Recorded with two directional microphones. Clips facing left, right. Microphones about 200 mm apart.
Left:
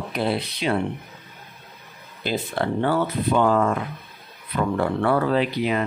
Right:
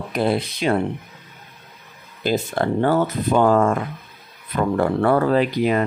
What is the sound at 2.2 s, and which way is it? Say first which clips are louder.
Speech: right 4 dB; 45° right (ahead or behind).